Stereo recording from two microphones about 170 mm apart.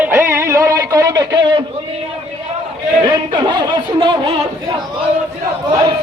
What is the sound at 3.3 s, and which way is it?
Speech, 25° right (ahead or behind).